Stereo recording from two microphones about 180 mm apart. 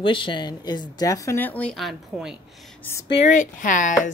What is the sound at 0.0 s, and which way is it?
Speech, 30° left (ahead or behind).